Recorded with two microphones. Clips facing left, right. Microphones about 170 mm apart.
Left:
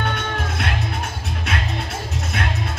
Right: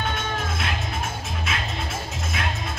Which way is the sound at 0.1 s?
60° left (ahead or behind).